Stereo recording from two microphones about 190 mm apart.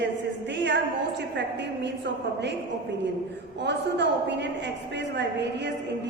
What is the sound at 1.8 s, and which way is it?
Speech, 65° right (ahead or behind).